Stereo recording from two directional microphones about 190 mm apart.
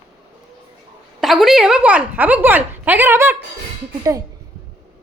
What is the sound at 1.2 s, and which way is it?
A woman's voice, centre (ahead or behind).